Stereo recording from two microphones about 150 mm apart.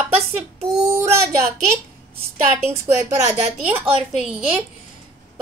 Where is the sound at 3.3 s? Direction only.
10° right (ahead or behind).